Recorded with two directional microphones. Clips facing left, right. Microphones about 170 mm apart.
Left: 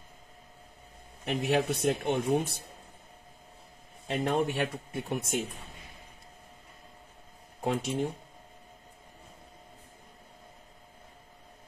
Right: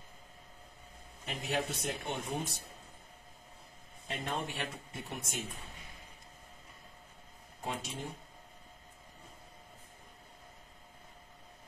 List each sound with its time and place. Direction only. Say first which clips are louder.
1.2 s speech: left 8 dB; 65° left (ahead or behind)
4.1 s speech: left 10 dB; 60° left (ahead or behind)
7.6 s speech: left 10 dB; 65° left (ahead or behind)